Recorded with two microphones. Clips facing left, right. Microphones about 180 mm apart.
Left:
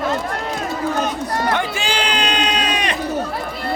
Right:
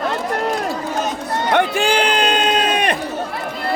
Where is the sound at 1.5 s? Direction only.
60° right (ahead or behind).